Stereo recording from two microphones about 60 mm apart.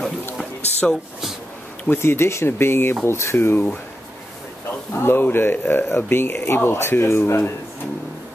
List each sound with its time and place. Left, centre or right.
0.8 s speech: centre
1.9 s speech: left
4.9 s speech: left